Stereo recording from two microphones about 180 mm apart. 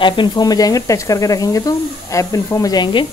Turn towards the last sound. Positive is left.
turn(degrees=25)  # may be behind; listen again after turning